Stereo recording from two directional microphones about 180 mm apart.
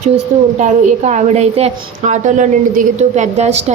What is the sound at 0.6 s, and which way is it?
A woman's voice, 40° right (ahead or behind).